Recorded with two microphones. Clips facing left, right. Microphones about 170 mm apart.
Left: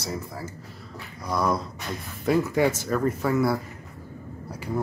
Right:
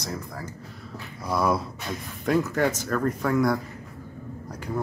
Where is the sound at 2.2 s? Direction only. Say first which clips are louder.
Left 1 dB; 5° left (ahead or behind).